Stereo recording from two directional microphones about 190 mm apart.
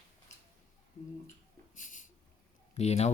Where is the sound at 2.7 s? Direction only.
35° left (ahead or behind).